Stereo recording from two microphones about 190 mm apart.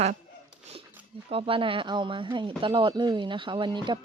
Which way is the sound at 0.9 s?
10° right (ahead or behind).